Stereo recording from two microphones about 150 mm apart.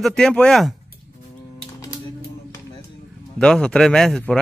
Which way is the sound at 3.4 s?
5° left (ahead or behind).